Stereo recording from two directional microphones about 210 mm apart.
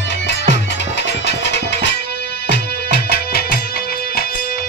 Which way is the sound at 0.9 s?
55° left (ahead or behind).